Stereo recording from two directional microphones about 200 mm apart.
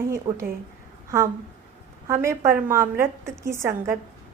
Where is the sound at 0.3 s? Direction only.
20° right (ahead or behind).